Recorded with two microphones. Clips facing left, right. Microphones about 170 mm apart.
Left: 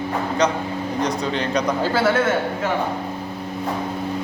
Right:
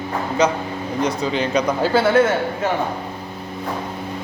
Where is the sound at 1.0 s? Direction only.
5° right (ahead or behind).